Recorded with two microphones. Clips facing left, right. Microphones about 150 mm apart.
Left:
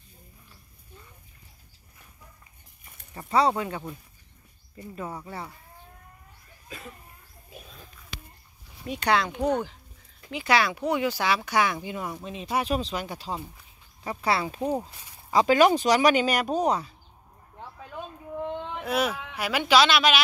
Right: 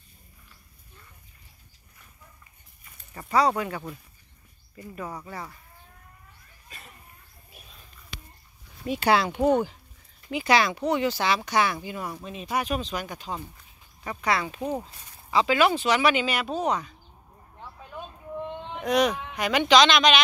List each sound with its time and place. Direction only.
3.2 s speech: 25° left (ahead or behind)
8.8 s speech: 5° right (ahead or behind)
10.3 s speech: centre (ahead or behind)
12.5 s speech: 30° left (ahead or behind)
14.6 s speech: 10° left (ahead or behind)
15.3 s speech: 45° left (ahead or behind)
18.9 s speech: 5° left (ahead or behind)